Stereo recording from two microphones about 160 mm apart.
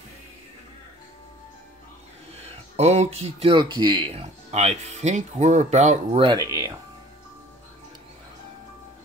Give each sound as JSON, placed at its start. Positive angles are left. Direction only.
{"t": 2.4, "sound": "speech", "side_deg": -40}
{"t": 6.2, "sound": "speech", "side_deg": -20}